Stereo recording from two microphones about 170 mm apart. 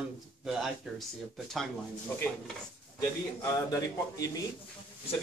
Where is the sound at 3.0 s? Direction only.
20° left (ahead or behind).